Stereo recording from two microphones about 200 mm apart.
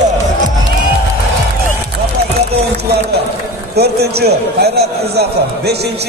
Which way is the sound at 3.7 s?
55° right (ahead or behind).